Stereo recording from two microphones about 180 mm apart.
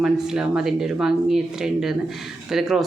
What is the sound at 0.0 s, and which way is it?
Speech, 5° right (ahead or behind).